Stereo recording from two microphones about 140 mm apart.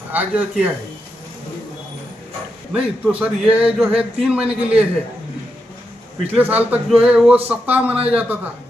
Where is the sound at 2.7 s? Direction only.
10° right (ahead or behind).